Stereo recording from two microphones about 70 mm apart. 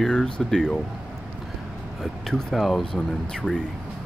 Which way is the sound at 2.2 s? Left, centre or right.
Centre.